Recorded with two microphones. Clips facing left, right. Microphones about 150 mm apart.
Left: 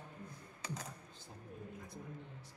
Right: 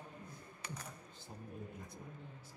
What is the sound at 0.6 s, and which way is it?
Typing, 90° left.